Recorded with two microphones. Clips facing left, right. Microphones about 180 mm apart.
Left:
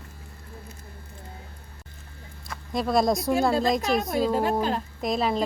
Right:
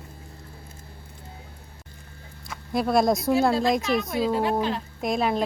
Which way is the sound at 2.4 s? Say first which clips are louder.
Right 2 dB; 5° right (ahead or behind).